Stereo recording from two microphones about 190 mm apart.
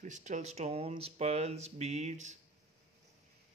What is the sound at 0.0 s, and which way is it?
Speech, 40° right (ahead or behind).